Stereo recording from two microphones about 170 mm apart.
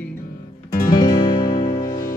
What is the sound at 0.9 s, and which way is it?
Music, 20° left (ahead or behind).